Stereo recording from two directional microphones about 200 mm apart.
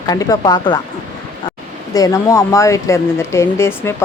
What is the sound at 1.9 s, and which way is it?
Speech, 15° left (ahead or behind).